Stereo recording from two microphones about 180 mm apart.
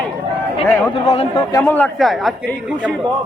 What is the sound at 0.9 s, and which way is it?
Speech, 30° left (ahead or behind).